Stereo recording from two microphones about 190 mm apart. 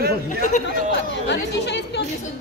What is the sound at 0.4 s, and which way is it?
Speech, 40° left (ahead or behind).